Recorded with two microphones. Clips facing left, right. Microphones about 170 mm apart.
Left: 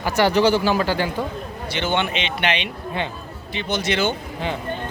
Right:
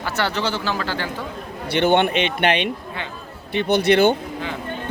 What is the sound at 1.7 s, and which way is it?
Speech, 60° right (ahead or behind).